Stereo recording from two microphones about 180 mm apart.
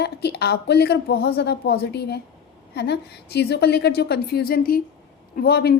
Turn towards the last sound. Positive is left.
turn(degrees=60)  # may be behind; listen again after turning